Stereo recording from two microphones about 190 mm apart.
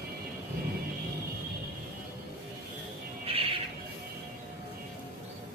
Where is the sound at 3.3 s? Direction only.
30° right (ahead or behind).